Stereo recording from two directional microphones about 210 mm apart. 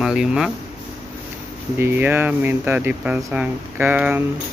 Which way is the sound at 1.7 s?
10° right (ahead or behind).